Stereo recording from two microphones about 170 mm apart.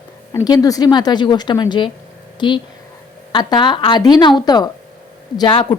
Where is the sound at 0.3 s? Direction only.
20° left (ahead or behind).